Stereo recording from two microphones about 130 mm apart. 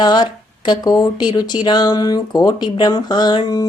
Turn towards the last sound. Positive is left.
turn(degrees=30)  # may be behind; listen again after turning